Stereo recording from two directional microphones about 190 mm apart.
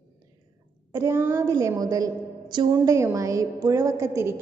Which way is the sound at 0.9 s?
15° right (ahead or behind).